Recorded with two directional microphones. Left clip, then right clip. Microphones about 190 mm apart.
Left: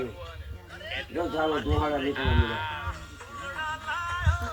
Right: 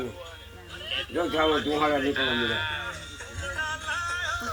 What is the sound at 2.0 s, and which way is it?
Speech, 55° right (ahead or behind).